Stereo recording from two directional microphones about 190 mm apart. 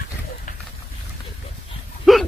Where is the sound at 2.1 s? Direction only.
Centre (ahead or behind).